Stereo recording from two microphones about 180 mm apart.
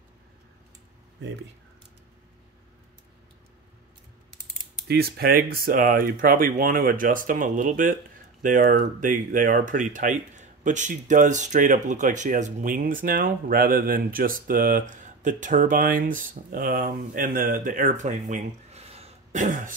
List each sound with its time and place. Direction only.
4.8 s speech: 60° right (ahead or behind); by 19.7 s 45° right (ahead or behind)